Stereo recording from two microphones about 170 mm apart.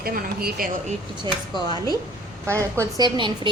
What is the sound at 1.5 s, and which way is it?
Speech, 25° left (ahead or behind).